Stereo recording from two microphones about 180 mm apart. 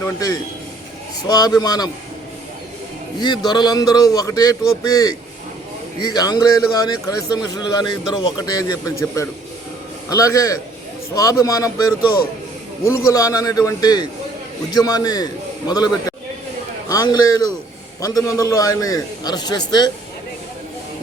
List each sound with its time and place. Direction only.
0.0 s a man's voice: 20° left (ahead or behind)
3.2 s a man's voice: 25° left (ahead or behind)
12.8 s a man's voice: 15° left (ahead or behind)